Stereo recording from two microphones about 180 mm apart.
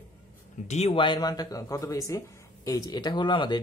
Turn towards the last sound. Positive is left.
turn(degrees=25)  # may be behind; listen again after turning